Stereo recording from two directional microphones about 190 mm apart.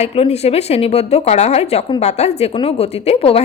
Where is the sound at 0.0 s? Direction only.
30° left (ahead or behind).